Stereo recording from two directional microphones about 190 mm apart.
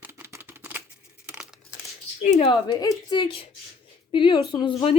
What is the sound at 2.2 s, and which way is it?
Speech, 40° left (ahead or behind).